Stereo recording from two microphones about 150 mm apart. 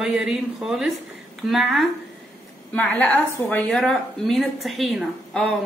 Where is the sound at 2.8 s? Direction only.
10° left (ahead or behind).